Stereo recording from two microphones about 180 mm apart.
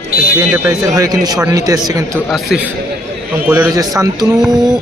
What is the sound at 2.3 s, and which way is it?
A man's voice, 5° right (ahead or behind).